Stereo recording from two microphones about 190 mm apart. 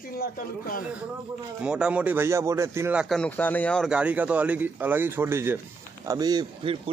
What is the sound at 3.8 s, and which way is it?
A man's voice, 5° right (ahead or behind).